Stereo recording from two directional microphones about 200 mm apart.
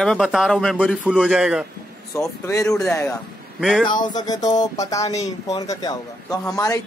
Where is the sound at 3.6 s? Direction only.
Centre (ahead or behind).